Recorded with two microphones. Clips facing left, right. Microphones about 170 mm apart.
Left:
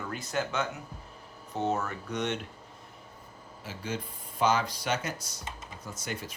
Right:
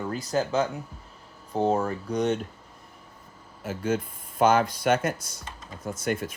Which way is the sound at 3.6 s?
50° right (ahead or behind).